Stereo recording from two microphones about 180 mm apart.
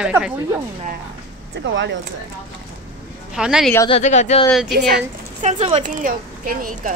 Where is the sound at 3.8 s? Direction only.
35° left (ahead or behind).